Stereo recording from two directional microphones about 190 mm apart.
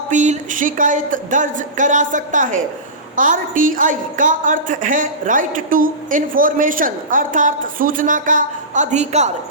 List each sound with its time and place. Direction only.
0.1 s a woman's voice: 40° right (ahead or behind)